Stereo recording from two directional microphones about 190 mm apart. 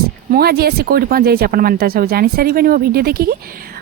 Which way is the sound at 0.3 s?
55° right (ahead or behind).